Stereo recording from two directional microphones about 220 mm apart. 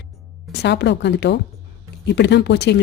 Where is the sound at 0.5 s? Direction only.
50° left (ahead or behind).